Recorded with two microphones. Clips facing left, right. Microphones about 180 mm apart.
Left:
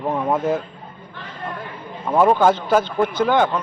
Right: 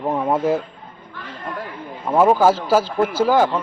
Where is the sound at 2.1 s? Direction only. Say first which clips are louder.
Right 1 dB; 5° right (ahead or behind).